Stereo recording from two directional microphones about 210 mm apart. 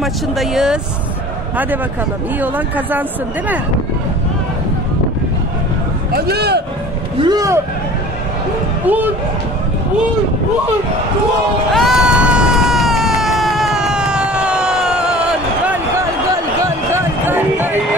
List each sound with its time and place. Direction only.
0.0 s speech: centre (ahead or behind)
2.4 s speech: 10° right (ahead or behind)
6.1 s a man's voice: 50° right (ahead or behind)
7.2 s speech: 20° right (ahead or behind)
8.8 s speech: 10° right (ahead or behind)
11.7 s a sound: centre (ahead or behind)
16.6 s a sound: 10° right (ahead or behind)